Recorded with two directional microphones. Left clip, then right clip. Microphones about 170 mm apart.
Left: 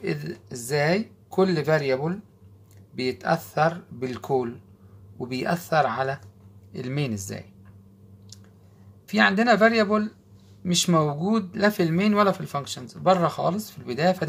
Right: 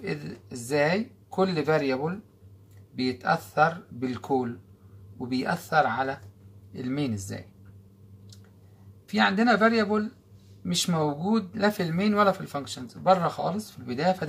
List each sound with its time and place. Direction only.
0.0 s speech: 50° left (ahead or behind)
9.0 s speech: 45° left (ahead or behind)